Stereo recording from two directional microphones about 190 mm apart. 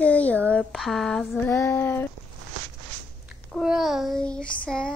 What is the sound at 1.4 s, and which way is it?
Speech, 15° left (ahead or behind).